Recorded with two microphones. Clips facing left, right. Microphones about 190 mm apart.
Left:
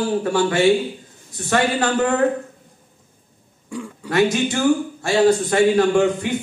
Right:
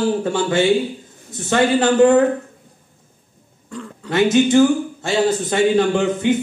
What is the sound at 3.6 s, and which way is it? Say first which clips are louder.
Throat clearing: left 2 dB; 10° left (ahead or behind).